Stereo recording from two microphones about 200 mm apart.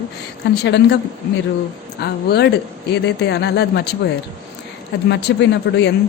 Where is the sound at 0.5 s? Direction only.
60° left (ahead or behind).